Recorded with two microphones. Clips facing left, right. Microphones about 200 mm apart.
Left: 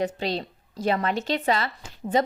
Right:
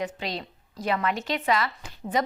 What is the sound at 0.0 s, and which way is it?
A woman's voice, 30° left (ahead or behind).